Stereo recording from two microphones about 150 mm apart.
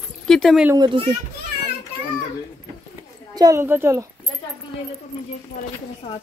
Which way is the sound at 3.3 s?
20° right (ahead or behind).